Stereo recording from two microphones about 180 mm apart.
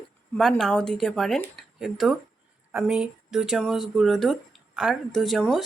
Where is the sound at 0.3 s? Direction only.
Centre (ahead or behind).